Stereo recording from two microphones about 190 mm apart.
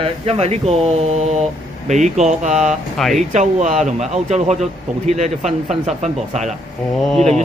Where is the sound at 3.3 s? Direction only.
40° right (ahead or behind).